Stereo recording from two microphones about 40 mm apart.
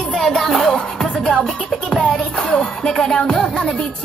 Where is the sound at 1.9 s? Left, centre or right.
Left.